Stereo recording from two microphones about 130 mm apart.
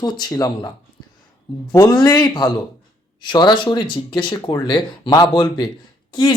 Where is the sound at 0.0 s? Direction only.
30° left (ahead or behind).